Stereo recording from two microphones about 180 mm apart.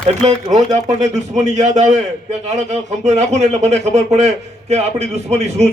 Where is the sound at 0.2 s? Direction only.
40° right (ahead or behind).